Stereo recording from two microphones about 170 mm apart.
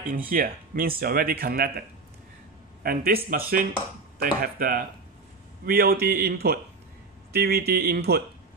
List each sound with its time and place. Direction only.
0.3 s speech: 55° right (ahead or behind)